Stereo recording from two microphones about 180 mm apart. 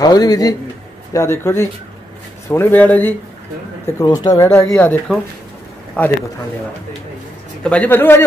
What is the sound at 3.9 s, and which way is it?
A man's voice, 20° left (ahead or behind).